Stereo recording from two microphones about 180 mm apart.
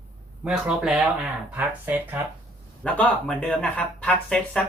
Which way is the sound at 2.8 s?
5° left (ahead or behind).